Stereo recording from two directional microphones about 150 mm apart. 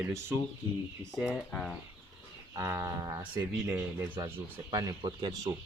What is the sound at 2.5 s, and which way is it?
Speech, 15° right (ahead or behind).